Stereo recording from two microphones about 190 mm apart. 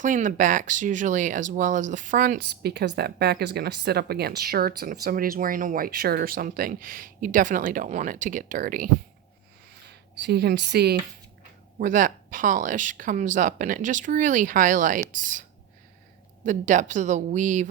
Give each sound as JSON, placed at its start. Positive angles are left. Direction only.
{"t": 0.0, "sound": "speech", "side_deg": -40}
{"t": 9.9, "sound": "speech", "side_deg": -60}
{"t": 11.8, "sound": "speech", "side_deg": -45}
{"t": 16.5, "sound": "a woman's voice", "side_deg": -40}